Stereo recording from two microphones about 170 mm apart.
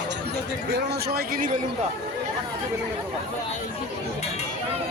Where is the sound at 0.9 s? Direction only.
70° right (ahead or behind).